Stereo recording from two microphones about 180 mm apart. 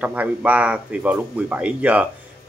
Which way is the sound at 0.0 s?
5° right (ahead or behind).